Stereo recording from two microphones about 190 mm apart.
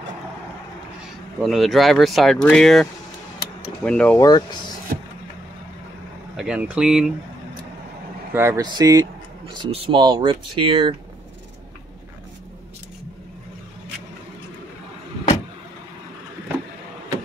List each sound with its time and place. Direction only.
1.4 s speech: centre (ahead or behind)
4.2 s speech: 20° left (ahead or behind)
4.9 s vehicle: 45° right (ahead or behind)
6.3 s speech: 5° right (ahead or behind)
8.3 s speech: 15° right (ahead or behind)